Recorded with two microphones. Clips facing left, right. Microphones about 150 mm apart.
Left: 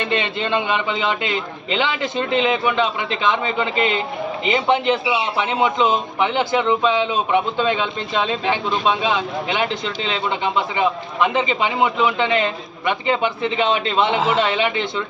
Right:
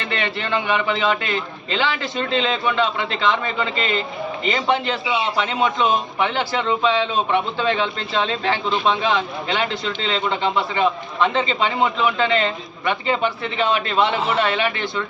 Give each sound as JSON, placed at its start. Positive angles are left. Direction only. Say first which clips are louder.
{"t": 0.1, "sound": "a man's voice", "louder": "right 1 dB", "side_deg": 20}